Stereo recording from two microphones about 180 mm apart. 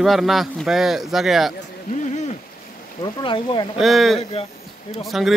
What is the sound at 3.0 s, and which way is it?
Speech, 25° left (ahead or behind).